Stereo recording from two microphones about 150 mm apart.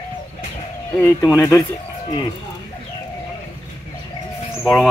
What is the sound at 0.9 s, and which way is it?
Speech, 20° left (ahead or behind).